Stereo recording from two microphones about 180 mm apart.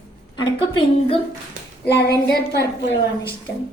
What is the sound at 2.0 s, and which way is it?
Speech, 65° left (ahead or behind).